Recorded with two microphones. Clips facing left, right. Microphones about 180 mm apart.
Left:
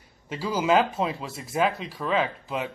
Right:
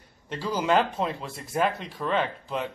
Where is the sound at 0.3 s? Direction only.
5° left (ahead or behind).